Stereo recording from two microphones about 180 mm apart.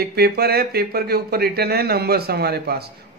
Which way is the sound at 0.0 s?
60° right (ahead or behind).